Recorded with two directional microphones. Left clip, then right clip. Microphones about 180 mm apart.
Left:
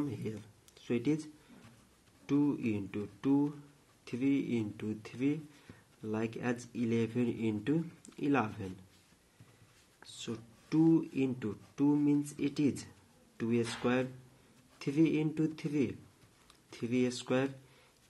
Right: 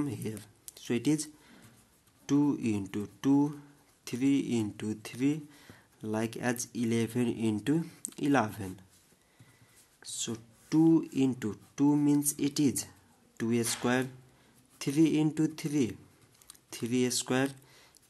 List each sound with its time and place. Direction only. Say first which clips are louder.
0.0 s speech: right 3 dB; 35° right (ahead or behind)
10.0 s speech: right 5 dB; 35° right (ahead or behind)